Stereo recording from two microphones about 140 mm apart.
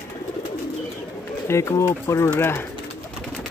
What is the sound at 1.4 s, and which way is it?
Speech, 20° left (ahead or behind).